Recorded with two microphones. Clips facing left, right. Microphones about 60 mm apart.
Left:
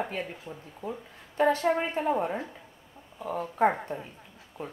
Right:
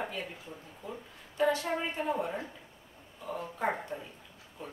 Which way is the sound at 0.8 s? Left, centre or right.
Left.